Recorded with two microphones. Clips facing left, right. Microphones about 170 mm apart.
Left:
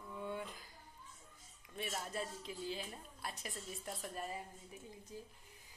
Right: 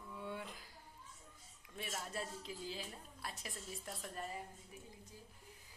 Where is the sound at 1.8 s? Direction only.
Centre (ahead or behind).